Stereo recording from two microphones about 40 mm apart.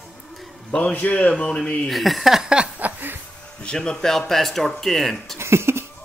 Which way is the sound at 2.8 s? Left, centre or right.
Right.